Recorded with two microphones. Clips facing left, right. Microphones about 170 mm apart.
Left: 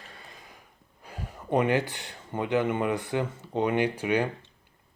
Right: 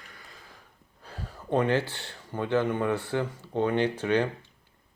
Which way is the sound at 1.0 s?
15° left (ahead or behind).